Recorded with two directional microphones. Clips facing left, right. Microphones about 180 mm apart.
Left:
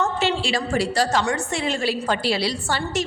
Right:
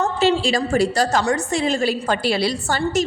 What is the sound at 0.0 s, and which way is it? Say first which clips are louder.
A woman's voice: right 4 dB; 40° right (ahead or behind).